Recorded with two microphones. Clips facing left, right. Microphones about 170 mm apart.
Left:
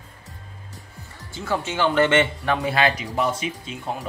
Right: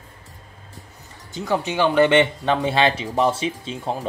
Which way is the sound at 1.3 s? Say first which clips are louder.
Right 3 dB; 15° right (ahead or behind).